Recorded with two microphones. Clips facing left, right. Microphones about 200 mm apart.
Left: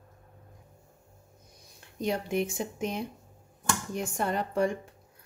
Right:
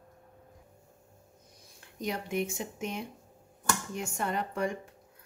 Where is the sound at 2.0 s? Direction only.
30° left (ahead or behind).